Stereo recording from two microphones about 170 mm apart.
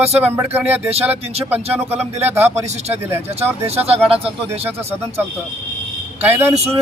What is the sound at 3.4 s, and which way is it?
Speech, 40° right (ahead or behind).